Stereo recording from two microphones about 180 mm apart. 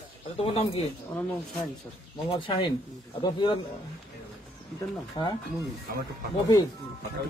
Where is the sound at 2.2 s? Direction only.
30° left (ahead or behind).